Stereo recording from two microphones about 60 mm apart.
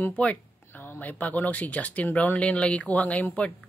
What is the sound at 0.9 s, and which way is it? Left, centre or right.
Speech, left.